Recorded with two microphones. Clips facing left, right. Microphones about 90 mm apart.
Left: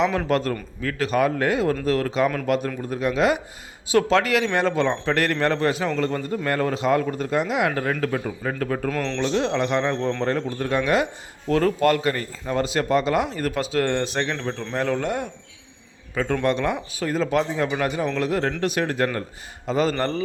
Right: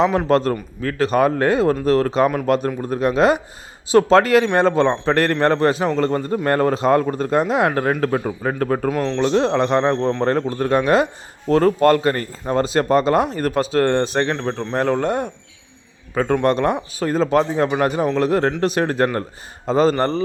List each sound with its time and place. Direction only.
0.3 s speech: 35° right (ahead or behind)
8.9 s speech: 10° right (ahead or behind)
9.2 s speech: 40° right (ahead or behind)